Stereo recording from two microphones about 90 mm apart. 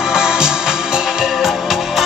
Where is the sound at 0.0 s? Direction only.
5° right (ahead or behind).